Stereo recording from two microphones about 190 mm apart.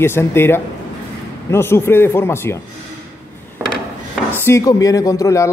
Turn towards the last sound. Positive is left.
turn(degrees=15)  # may be behind; listen again after turning